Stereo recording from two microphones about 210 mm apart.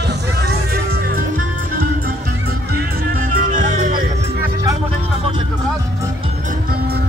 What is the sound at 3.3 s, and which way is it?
Music, 35° right (ahead or behind).